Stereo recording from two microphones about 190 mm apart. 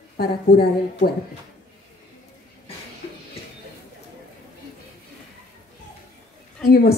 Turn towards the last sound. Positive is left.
turn(degrees=55)  # may be behind; listen again after turning